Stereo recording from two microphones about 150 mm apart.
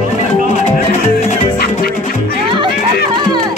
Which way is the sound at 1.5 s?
90° left.